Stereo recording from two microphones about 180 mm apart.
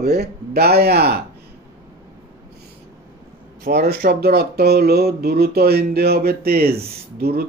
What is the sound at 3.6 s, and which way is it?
Speech, 60° right (ahead or behind).